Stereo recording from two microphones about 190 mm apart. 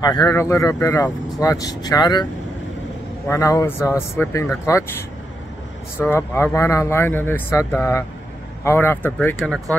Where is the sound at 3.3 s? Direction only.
15° left (ahead or behind).